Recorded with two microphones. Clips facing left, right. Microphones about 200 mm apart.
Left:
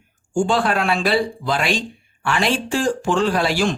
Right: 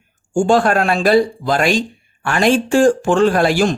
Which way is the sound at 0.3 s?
45° right (ahead or behind).